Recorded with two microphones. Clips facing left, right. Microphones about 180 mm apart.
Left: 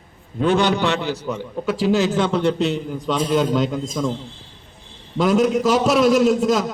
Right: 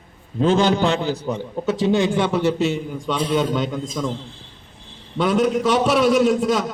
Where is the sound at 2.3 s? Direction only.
5° right (ahead or behind).